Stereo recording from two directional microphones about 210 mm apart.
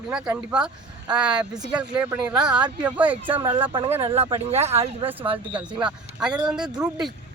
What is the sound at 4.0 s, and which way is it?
Speech, 30° right (ahead or behind).